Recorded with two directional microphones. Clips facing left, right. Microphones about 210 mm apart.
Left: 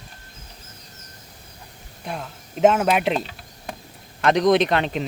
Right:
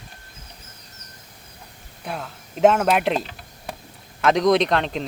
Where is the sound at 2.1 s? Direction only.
Centre (ahead or behind).